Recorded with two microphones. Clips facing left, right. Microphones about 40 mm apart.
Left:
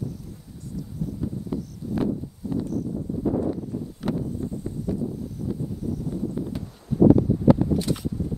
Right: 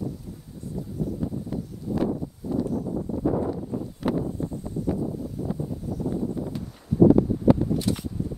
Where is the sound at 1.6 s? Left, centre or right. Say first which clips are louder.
Right 1 dB; right.